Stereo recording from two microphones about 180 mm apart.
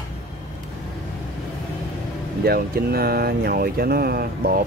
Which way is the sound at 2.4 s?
55° right (ahead or behind).